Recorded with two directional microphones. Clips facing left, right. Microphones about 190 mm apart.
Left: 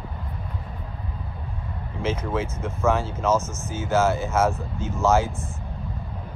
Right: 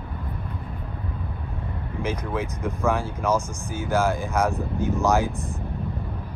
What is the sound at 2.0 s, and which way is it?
Speech, 15° right (ahead or behind).